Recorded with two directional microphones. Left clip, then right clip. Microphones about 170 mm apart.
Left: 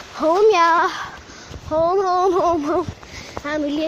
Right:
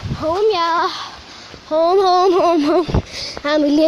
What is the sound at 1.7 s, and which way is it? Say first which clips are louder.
Speech: right 4 dB; 35° right (ahead or behind).